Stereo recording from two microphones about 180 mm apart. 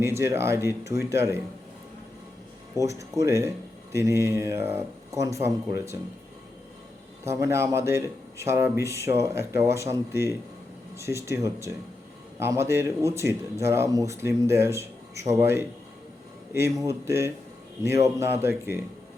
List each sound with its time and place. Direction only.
0.0 s speech: 15° right (ahead or behind)
2.7 s speech: 15° right (ahead or behind)
7.3 s speech: 15° right (ahead or behind)